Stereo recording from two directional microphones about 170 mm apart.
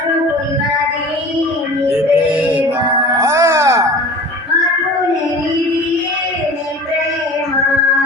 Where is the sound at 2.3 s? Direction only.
10° right (ahead or behind).